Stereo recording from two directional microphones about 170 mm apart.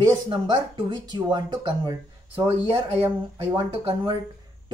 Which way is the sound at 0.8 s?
25° right (ahead or behind).